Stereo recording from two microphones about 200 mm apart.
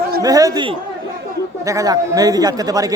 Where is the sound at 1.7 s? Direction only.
15° right (ahead or behind).